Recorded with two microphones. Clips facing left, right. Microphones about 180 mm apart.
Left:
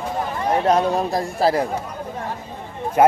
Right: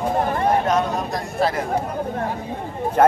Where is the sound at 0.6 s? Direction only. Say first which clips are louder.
Left 3 dB; 30° left (ahead or behind).